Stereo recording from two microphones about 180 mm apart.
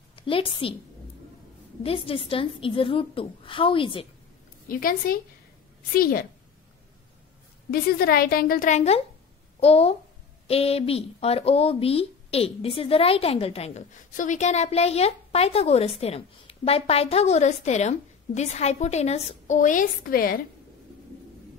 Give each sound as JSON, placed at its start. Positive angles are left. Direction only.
{"t": 0.1, "sound": "a woman's voice", "side_deg": 30}
{"t": 1.8, "sound": "a woman's voice", "side_deg": 30}
{"t": 4.6, "sound": "a woman's voice", "side_deg": 55}
{"t": 7.7, "sound": "a woman's voice", "side_deg": 55}